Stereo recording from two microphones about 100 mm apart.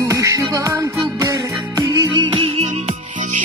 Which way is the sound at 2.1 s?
60° right (ahead or behind).